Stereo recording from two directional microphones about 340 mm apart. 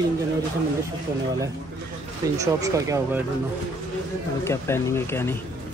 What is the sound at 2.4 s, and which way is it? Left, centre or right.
Speech, centre.